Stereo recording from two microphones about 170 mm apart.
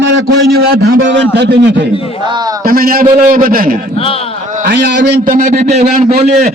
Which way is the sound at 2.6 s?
60° right (ahead or behind).